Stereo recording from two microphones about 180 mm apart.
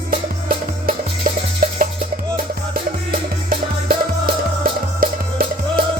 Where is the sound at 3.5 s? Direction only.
50° right (ahead or behind).